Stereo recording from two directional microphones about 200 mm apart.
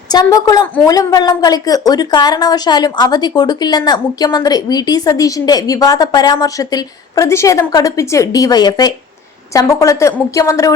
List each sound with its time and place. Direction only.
0.1 s a woman's voice: 20° left (ahead or behind)